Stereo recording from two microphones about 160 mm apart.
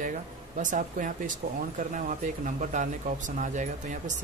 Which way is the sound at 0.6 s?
55° right (ahead or behind).